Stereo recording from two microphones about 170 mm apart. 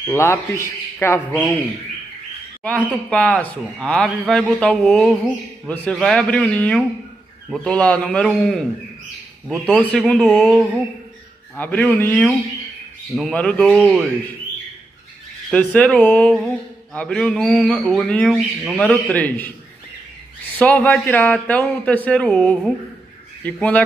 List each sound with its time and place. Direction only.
0.0 s a man's voice: 15° left (ahead or behind)
2.6 s a man's voice: 5° left (ahead or behind)
11.5 s a man's voice: 10° left (ahead or behind)
15.5 s a man's voice: 5° left (ahead or behind)
18.8 s a man's voice: 10° left (ahead or behind)
20.5 s a man's voice: 10° left (ahead or behind)